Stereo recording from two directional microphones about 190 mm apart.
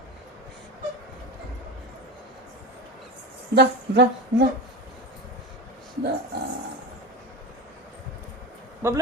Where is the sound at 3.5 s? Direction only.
60° right (ahead or behind).